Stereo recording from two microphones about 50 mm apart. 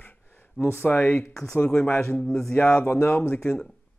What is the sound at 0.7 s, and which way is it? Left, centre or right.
Speech, left.